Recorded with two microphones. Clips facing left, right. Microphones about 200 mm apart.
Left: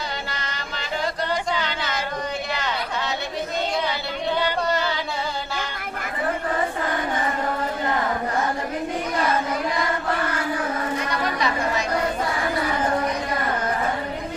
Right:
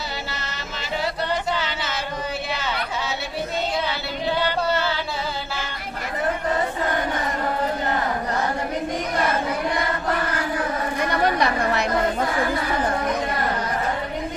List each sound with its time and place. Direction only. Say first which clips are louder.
1.5 s a sound: left 1 dB; 5° right (ahead or behind)
4.7 s music: right 1 dB; 5° right (ahead or behind)
11.1 s chatter: right 4 dB; 60° right (ahead or behind)